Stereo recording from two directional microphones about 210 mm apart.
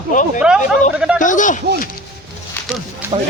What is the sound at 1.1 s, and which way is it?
Speech, 35° left (ahead or behind).